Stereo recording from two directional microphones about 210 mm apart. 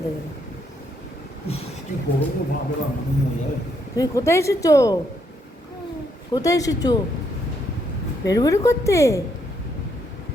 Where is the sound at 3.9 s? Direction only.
15° left (ahead or behind).